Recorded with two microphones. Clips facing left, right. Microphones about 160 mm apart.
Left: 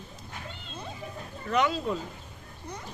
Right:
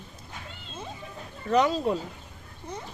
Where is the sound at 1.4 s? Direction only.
35° right (ahead or behind).